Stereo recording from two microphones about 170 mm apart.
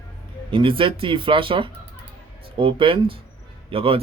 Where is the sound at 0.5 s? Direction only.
30° right (ahead or behind).